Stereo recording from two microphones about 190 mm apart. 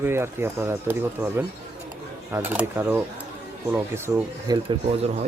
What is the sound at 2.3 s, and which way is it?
Speech, 10° right (ahead or behind).